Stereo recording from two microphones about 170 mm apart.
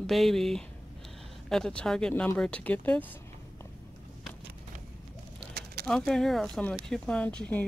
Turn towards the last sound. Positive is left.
turn(degrees=5)  # may be behind; listen again after turning